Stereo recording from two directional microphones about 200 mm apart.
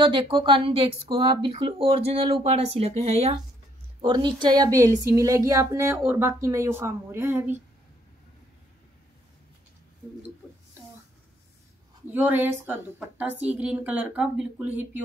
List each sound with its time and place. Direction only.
0.0 s a woman's voice: 25° right (ahead or behind)
12.1 s a woman's voice: 10° right (ahead or behind)